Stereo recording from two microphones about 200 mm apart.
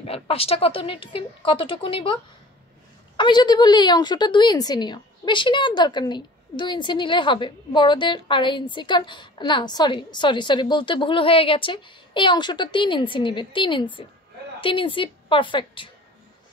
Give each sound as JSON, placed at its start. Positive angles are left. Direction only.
{"t": 0.0, "sound": "a woman's voice", "side_deg": 30}
{"t": 3.2, "sound": "a woman's voice", "side_deg": 20}